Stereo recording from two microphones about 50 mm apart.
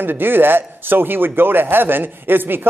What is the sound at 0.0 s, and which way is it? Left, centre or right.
Speech, right.